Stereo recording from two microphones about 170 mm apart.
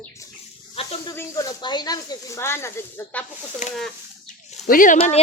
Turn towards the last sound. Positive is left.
turn(degrees=35)  # may be behind; listen again after turning